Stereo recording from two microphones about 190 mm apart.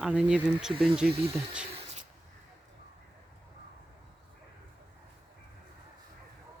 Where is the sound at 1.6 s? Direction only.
30° right (ahead or behind).